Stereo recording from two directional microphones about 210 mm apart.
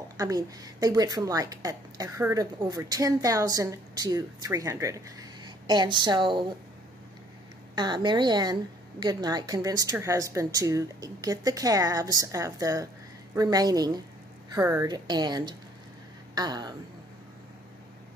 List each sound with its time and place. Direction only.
0.2 s a woman's voice: 15° right (ahead or behind)
7.7 s a woman's voice: 20° right (ahead or behind)